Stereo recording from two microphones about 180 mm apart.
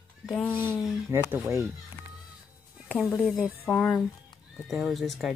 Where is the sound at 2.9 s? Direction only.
5° left (ahead or behind).